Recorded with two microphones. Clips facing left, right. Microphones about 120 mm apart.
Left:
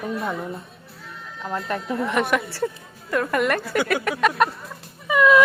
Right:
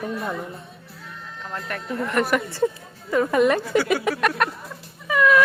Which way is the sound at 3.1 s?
15° right (ahead or behind).